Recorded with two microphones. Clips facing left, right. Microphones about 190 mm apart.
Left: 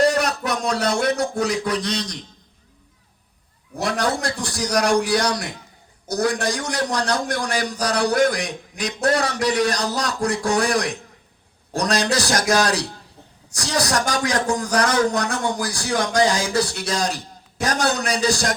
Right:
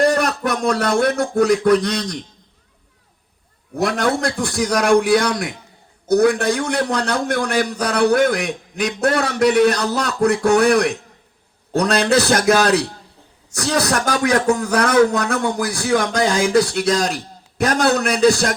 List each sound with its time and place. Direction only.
0.0 s a man's voice: 55° right (ahead or behind)
3.8 s speech: 55° right (ahead or behind)